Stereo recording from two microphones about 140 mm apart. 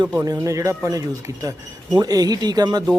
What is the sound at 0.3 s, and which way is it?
Speech, 20° right (ahead or behind).